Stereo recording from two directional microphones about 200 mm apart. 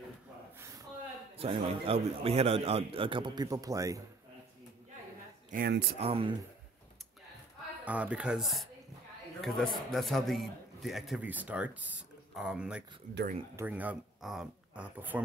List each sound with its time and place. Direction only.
0.6 s gasp: 15° right (ahead or behind)
1.4 s a man's voice: 30° right (ahead or behind)
5.5 s speech: 50° right (ahead or behind)
5.9 s a man's voice: 30° right (ahead or behind)
7.8 s a man's voice: 5° right (ahead or behind)
13.1 s speech: 50° right (ahead or behind)
13.6 s speech: 10° right (ahead or behind)